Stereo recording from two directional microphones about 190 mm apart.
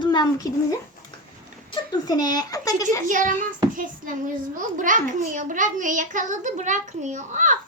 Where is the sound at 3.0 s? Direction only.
45° right (ahead or behind).